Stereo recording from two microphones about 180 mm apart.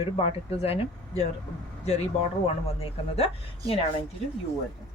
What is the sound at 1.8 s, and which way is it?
Speech, 35° left (ahead or behind).